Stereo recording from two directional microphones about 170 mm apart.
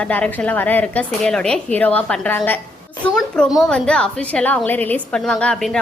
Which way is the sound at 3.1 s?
Centre (ahead or behind).